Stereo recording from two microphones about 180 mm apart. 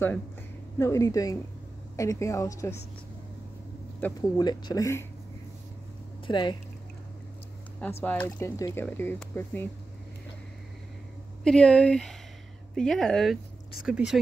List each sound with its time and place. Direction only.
0.7 s speech: 15° left (ahead or behind)
4.0 s speech: 10° left (ahead or behind)
4.4 s speech: 25° left (ahead or behind)
6.2 s speech: 25° left (ahead or behind)
8.0 s speech: 10° left (ahead or behind)
11.4 s speech: 5° left (ahead or behind)